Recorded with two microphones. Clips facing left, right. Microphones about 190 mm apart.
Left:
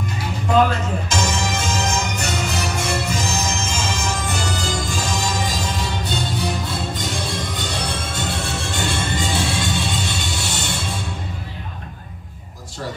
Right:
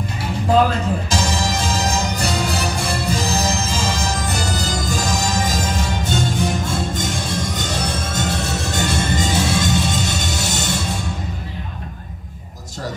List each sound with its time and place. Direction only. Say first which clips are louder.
1.1 s music: left 1 dB; 35° right (ahead or behind)